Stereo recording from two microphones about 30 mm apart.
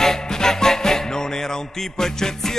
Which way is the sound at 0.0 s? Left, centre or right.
Centre.